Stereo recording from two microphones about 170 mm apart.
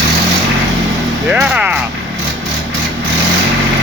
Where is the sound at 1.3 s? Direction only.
10° right (ahead or behind).